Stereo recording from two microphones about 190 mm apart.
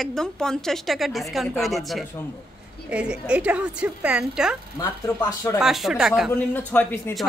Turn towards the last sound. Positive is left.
turn(degrees=10)  # may be behind; listen again after turning